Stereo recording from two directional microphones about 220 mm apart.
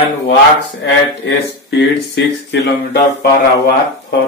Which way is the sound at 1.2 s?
55° left (ahead or behind).